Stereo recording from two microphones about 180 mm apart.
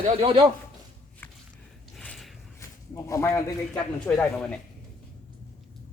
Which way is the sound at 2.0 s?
5° left (ahead or behind).